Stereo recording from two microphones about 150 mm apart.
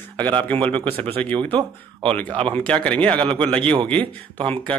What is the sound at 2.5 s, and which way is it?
Speech, 5° left (ahead or behind).